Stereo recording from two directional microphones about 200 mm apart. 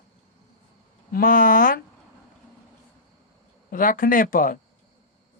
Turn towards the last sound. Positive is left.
turn(degrees=45)  # may be behind; listen again after turning